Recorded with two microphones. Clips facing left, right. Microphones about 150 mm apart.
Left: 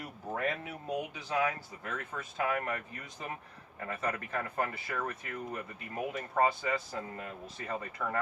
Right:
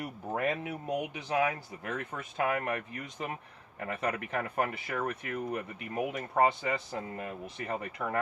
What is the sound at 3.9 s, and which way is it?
Speech, 20° right (ahead or behind).